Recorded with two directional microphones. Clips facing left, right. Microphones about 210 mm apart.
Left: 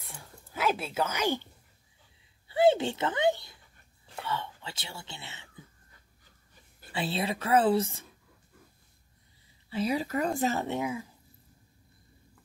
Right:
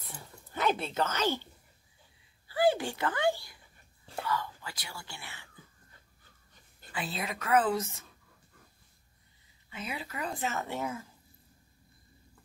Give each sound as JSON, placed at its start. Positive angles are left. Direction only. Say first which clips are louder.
{"t": 0.1, "sound": "speech", "louder": "right 1 dB", "side_deg": 5}
{"t": 6.9, "sound": "a woman's voice", "louder": "left 6 dB", "side_deg": 30}
{"t": 9.7, "sound": "speech", "louder": "left 11 dB", "side_deg": 35}
{"t": 10.7, "sound": "speech", "louder": "left 4 dB", "side_deg": 15}